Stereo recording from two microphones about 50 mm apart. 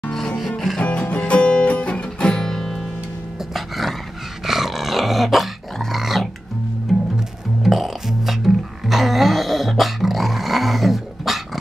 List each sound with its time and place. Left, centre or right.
0.1 s music: centre
0.4 s music: centre
0.7 s music: left; by 2.9 s centre
3.5 s dog: centre
6.9 s music: centre